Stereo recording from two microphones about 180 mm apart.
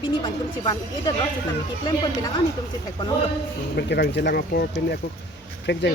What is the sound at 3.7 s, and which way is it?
Speech, 65° left (ahead or behind).